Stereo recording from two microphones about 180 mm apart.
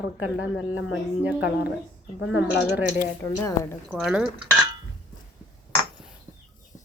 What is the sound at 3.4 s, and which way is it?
Speech, 15° left (ahead or behind).